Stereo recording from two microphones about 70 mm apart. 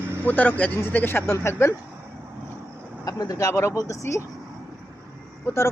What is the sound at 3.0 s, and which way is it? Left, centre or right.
Speech, left.